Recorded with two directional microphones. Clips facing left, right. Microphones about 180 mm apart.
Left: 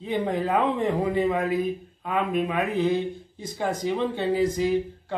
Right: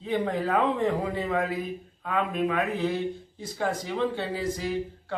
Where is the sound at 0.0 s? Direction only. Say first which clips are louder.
Left 1 dB; 20° left (ahead or behind).